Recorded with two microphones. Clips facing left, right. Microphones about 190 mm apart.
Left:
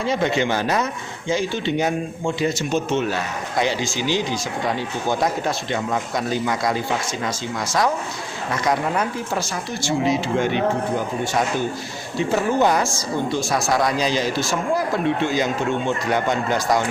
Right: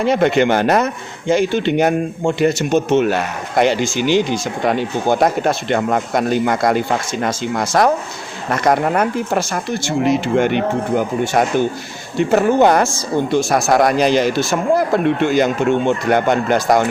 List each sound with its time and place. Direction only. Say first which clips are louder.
0.0 s speech: right 7 dB; 65° right (ahead or behind)